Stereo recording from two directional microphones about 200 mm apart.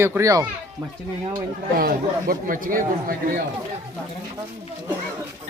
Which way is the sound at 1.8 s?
45° right (ahead or behind).